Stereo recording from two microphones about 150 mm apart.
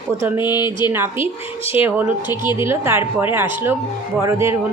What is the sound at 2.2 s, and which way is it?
Speech, 30° left (ahead or behind).